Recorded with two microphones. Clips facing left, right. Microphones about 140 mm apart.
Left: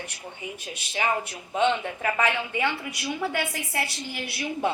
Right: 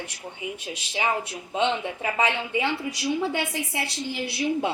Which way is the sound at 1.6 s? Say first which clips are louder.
Left 1 dB; 20° right (ahead or behind).